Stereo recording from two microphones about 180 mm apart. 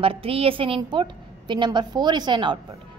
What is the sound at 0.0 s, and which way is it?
A woman's voice, 30° right (ahead or behind).